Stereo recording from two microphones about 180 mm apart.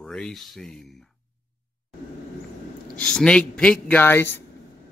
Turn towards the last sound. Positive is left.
turn(degrees=10)  # may be behind; listen again after turning